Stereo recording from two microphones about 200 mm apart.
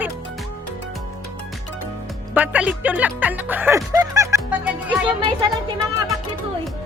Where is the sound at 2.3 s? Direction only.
5° right (ahead or behind).